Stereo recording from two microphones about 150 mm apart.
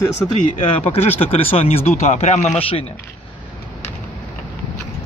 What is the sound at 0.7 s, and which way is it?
Speech, 40° left (ahead or behind).